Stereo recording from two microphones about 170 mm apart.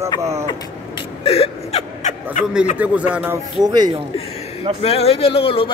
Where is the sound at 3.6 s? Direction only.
25° right (ahead or behind).